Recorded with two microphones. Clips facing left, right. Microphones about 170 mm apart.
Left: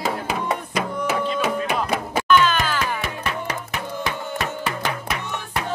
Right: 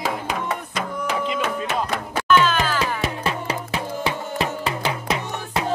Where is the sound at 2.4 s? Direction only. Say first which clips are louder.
Even; 5° right (ahead or behind).